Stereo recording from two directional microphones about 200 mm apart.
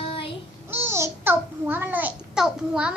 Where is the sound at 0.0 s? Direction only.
25° left (ahead or behind).